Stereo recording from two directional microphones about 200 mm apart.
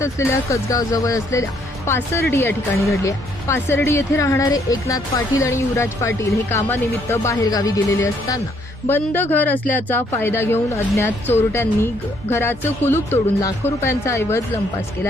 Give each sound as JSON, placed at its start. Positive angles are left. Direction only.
{"t": 0.0, "sound": "speech", "side_deg": 15}